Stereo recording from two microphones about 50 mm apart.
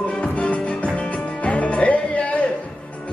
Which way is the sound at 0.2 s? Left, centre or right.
Left.